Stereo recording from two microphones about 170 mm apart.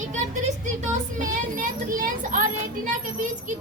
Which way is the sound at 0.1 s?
45° right (ahead or behind).